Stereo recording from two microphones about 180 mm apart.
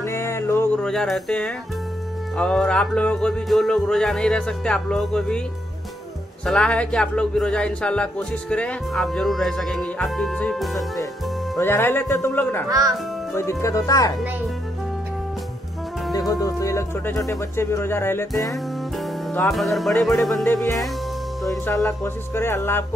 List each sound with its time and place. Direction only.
0.0 s a sound: 15° left (ahead or behind)
0.8 s speech: centre (ahead or behind)
6.4 s speech: 5° left (ahead or behind)
11.5 s speech: 15° left (ahead or behind)
12.6 s a child's voice: 20° right (ahead or behind)
13.3 s speech: 15° left (ahead or behind)
16.1 s speech: 20° left (ahead or behind)
19.5 s speech: centre (ahead or behind)
21.6 s speech: 15° left (ahead or behind)